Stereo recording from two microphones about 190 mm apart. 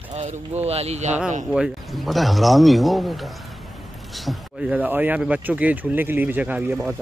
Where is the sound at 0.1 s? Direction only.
35° right (ahead or behind).